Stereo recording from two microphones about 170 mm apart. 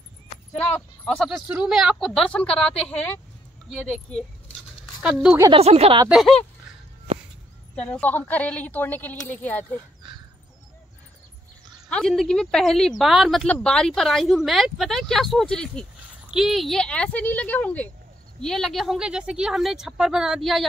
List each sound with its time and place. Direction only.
0.6 s a woman's voice: 5° left (ahead or behind)
3.7 s speech: 5° left (ahead or behind)
5.0 s a woman's voice: 5° right (ahead or behind)
5.5 s speech: 35° right (ahead or behind)
6.0 s a woman's voice: centre (ahead or behind)
7.9 s speech: 10° left (ahead or behind)
11.9 s a woman's voice: centre (ahead or behind)